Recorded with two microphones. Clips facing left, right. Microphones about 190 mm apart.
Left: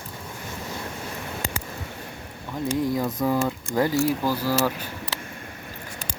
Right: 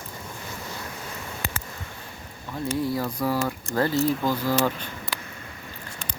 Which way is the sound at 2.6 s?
15° left (ahead or behind).